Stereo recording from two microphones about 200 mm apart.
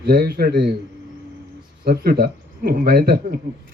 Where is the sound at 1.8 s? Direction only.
50° right (ahead or behind).